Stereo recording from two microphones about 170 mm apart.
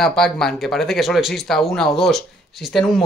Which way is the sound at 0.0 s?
Centre (ahead or behind).